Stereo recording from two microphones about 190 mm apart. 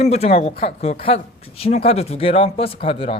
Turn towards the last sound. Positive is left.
turn(degrees=30)  # may be behind; listen again after turning